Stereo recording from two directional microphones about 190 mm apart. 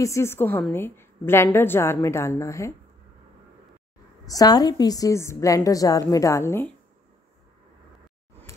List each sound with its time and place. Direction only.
0.0 s a woman's voice: 15° left (ahead or behind)
4.3 s a woman's voice: 20° left (ahead or behind)